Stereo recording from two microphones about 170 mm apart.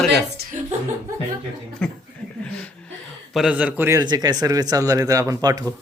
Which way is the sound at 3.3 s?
5° right (ahead or behind).